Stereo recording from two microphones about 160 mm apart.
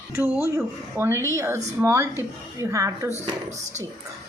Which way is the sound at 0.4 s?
15° right (ahead or behind).